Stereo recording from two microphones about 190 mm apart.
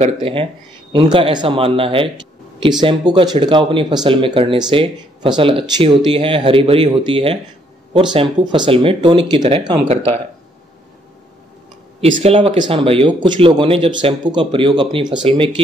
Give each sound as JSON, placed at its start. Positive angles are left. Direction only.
{"t": 0.0, "sound": "speech", "side_deg": -30}
{"t": 3.1, "sound": "speech", "side_deg": -25}
{"t": 12.0, "sound": "speech", "side_deg": -30}